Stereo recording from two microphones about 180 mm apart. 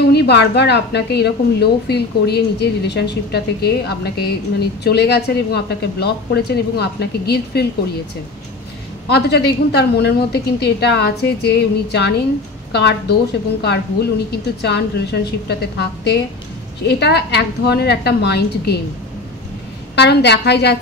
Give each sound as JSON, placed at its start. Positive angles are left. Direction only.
{"t": 0.1, "sound": "a woman's voice", "side_deg": 65}
{"t": 9.1, "sound": "a woman's voice", "side_deg": 65}
{"t": 20.0, "sound": "a woman's voice", "side_deg": 70}